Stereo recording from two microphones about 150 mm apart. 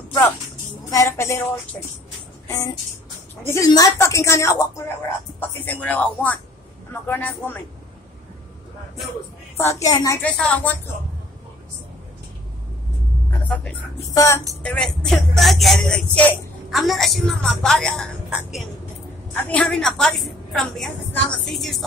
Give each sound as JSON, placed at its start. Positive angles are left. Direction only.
{"t": 0.8, "sound": "speech", "side_deg": 20}
{"t": 9.6, "sound": "speech", "side_deg": 20}
{"t": 10.2, "sound": "speech", "side_deg": 10}
{"t": 14.0, "sound": "speech", "side_deg": 20}
{"t": 14.6, "sound": "speech", "side_deg": 5}
{"t": 19.4, "sound": "speech", "side_deg": 10}